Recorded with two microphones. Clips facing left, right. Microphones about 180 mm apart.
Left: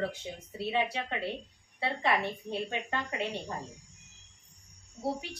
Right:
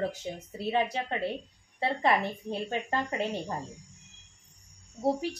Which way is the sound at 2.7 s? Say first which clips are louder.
Right 4 dB; 40° right (ahead or behind).